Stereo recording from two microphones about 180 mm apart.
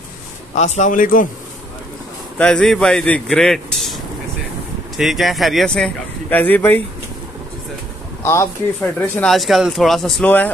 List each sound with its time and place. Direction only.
0.6 s a man's voice: 40° left (ahead or behind)
2.3 s speech: 5° left (ahead or behind)
8.2 s speech: 15° left (ahead or behind)
8.8 s speech: 5° left (ahead or behind)